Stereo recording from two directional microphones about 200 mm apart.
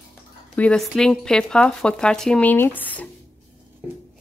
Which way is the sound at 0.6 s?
5° left (ahead or behind).